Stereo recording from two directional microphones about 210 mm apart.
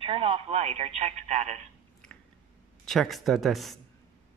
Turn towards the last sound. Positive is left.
turn(degrees=0)  # may be behind; listen again after turning